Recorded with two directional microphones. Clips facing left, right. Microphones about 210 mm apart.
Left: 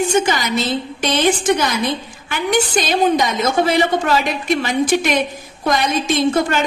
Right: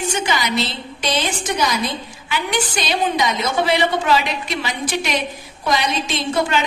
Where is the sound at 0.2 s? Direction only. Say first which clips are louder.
Left 2 dB; 45° left (ahead or behind).